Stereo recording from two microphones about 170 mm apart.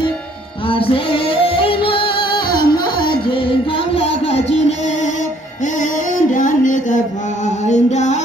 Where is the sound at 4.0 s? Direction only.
35° left (ahead or behind).